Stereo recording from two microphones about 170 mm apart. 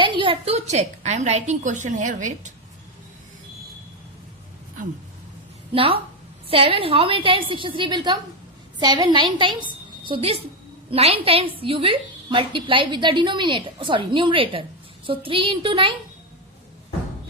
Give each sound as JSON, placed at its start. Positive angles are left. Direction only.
{"t": 0.0, "sound": "a woman's voice", "side_deg": -30}
{"t": 5.7, "sound": "a woman's voice", "side_deg": -30}